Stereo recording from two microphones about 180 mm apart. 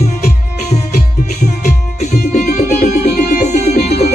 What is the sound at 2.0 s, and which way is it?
Music, 45° left (ahead or behind).